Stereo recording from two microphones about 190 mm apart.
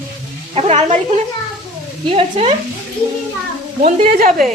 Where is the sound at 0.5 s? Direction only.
35° right (ahead or behind).